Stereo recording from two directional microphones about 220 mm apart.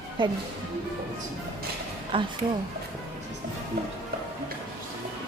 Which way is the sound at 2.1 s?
25° right (ahead or behind).